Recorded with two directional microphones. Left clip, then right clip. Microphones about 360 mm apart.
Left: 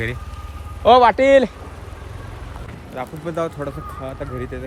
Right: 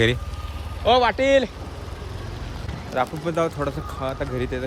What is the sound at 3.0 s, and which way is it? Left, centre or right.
Speech, centre.